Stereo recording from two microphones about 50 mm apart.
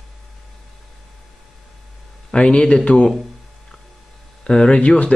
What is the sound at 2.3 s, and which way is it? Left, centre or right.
Speech, centre.